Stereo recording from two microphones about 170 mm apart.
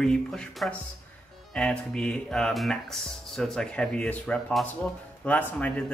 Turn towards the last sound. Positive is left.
turn(degrees=10)  # may be behind; listen again after turning